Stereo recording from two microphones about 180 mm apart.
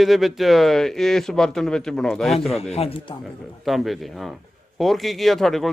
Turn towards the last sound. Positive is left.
turn(degrees=0)  # may be behind; listen again after turning